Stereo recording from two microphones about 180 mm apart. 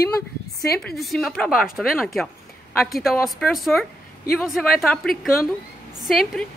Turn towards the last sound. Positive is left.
turn(degrees=0)  # may be behind; listen again after turning